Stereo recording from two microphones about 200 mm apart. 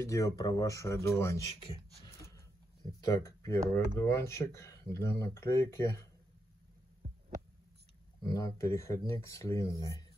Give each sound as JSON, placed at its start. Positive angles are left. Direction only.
{"t": 0.0, "sound": "speech", "side_deg": 15}
{"t": 3.0, "sound": "speech", "side_deg": 15}
{"t": 7.0, "sound": "heart sounds", "side_deg": -30}
{"t": 8.2, "sound": "speech", "side_deg": 20}